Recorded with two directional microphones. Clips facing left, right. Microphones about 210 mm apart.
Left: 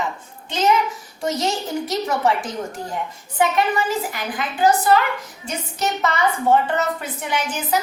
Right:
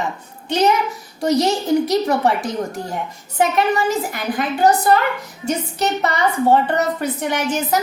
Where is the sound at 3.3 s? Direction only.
45° right (ahead or behind).